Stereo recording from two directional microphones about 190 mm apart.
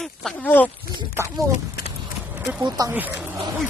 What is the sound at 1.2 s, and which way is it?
Speech, 10° right (ahead or behind).